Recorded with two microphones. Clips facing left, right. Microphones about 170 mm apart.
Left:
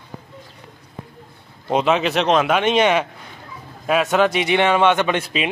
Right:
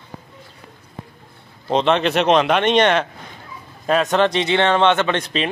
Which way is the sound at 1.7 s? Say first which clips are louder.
Right 1 dB; 5° left (ahead or behind).